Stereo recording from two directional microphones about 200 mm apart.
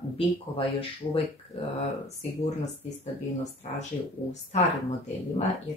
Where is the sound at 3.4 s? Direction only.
35° left (ahead or behind).